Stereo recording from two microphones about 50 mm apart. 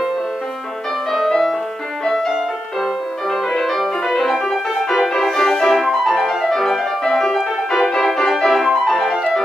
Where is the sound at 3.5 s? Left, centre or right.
Centre.